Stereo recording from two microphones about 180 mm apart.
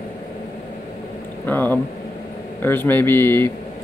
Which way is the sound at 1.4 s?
10° left (ahead or behind).